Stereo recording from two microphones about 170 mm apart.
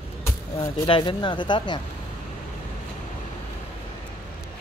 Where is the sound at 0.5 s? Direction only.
25° left (ahead or behind).